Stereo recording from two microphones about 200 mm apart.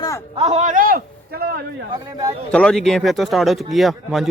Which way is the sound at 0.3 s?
30° right (ahead or behind).